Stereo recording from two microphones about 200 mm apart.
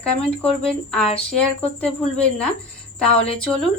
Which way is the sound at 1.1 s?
30° left (ahead or behind).